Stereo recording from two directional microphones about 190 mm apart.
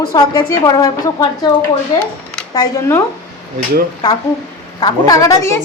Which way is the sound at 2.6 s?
20° left (ahead or behind).